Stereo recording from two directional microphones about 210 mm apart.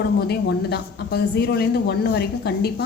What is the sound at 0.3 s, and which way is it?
A woman's voice, 50° left (ahead or behind).